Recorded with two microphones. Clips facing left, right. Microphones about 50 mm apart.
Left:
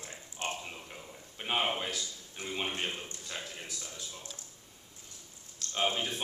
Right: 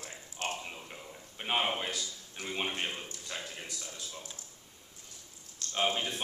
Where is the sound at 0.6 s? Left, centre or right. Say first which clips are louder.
Even; centre.